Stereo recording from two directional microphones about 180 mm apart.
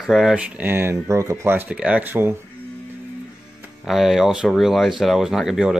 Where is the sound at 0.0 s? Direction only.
Centre (ahead or behind).